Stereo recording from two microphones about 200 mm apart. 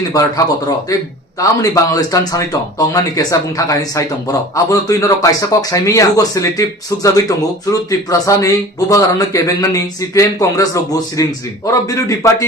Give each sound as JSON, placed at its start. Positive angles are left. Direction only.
{"t": 0.1, "sound": "speech", "side_deg": 20}